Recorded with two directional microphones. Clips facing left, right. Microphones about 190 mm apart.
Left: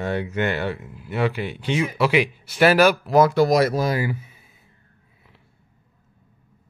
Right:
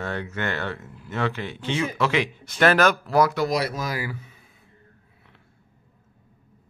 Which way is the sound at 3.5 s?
45° left (ahead or behind).